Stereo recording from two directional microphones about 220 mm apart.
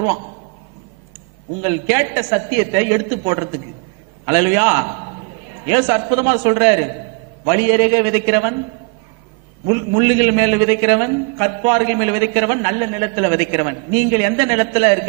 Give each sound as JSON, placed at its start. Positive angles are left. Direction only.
{"t": 1.6, "sound": "a man's voice", "side_deg": -15}
{"t": 9.7, "sound": "a man's voice", "side_deg": -15}